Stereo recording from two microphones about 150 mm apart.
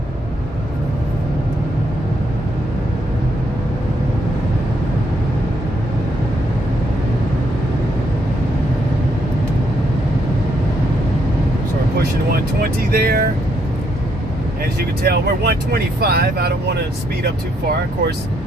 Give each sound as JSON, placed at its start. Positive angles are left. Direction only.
{"t": 11.9, "sound": "music", "side_deg": -90}
{"t": 14.8, "sound": "speech", "side_deg": -90}